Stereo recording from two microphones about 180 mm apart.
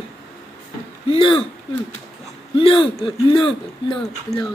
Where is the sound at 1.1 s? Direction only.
30° left (ahead or behind).